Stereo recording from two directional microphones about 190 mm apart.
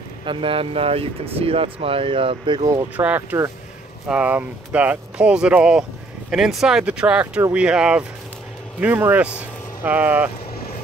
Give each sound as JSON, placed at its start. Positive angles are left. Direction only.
{"t": 0.2, "sound": "speech", "side_deg": -25}